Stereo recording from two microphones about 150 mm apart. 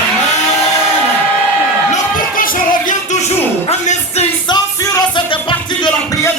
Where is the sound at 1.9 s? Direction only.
65° left (ahead or behind).